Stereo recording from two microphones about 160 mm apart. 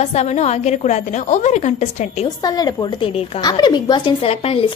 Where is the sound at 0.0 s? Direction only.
45° left (ahead or behind).